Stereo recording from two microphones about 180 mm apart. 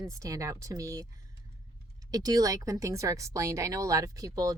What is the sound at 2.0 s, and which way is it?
A woman's voice, 20° right (ahead or behind).